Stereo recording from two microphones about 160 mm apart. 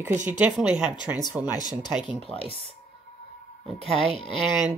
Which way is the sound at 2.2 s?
35° left (ahead or behind).